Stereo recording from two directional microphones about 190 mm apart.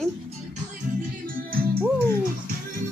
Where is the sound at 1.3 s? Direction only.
50° right (ahead or behind).